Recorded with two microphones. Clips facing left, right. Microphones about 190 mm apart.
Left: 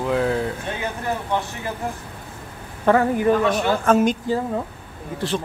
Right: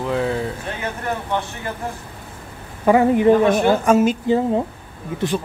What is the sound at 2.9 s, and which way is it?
Speech, 20° right (ahead or behind).